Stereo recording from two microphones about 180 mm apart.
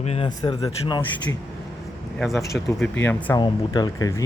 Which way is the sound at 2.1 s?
Centre (ahead or behind).